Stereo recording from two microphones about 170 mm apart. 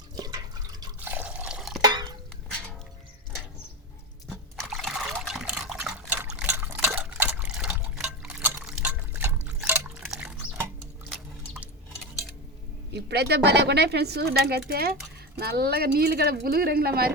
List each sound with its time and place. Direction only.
0.2 s drip: 25° right (ahead or behind)
0.9 s drip: 10° right (ahead or behind)
1.8 s a sound: 25° right (ahead or behind)
4.3 s liquid: centre (ahead or behind)
11.1 s a sound: 10° right (ahead or behind)
12.9 s speech: 75° right (ahead or behind)